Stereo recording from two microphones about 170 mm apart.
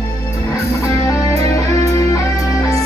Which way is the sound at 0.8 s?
20° left (ahead or behind).